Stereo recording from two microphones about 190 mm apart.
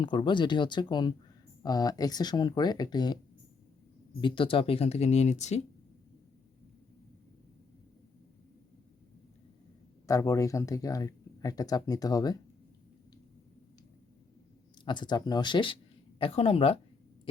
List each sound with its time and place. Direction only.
0.0 s speech: 25° left (ahead or behind)
4.2 s speech: 25° left (ahead or behind)
10.1 s speech: 15° left (ahead or behind)
14.8 s speech: 25° left (ahead or behind)